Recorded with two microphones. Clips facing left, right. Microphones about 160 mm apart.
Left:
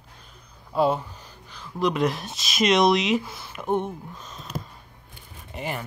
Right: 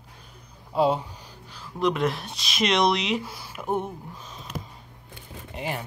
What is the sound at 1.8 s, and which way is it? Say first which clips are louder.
Speech: left 1 dB; centre (ahead or behind).